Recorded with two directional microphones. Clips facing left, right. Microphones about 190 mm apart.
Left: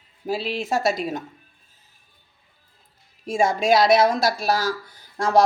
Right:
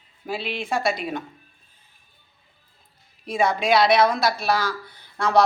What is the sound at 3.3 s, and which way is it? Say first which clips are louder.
Speech: left 2 dB; 45° left (ahead or behind).